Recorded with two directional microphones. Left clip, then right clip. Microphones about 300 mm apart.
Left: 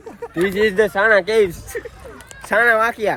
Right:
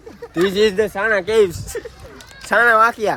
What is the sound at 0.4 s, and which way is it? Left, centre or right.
Speech, centre.